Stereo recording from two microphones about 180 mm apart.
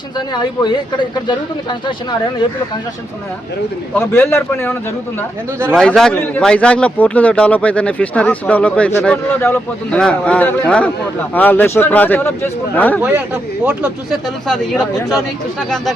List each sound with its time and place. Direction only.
0.3 s a man's voice: 25° left (ahead or behind)
3.9 s speech: 15° left (ahead or behind)
5.7 s speech: 5° left (ahead or behind)
13.0 s speech: 10° right (ahead or behind)
14.4 s speech: centre (ahead or behind)